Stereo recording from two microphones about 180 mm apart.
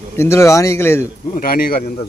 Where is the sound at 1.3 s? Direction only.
55° left (ahead or behind).